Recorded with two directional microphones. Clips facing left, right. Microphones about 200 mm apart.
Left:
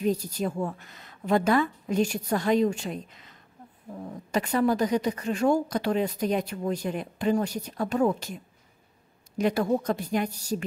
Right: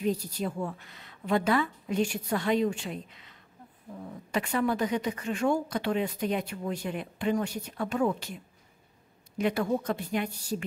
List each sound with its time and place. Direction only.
0.0 s a woman's voice: 45° left (ahead or behind)
9.4 s a woman's voice: 40° left (ahead or behind)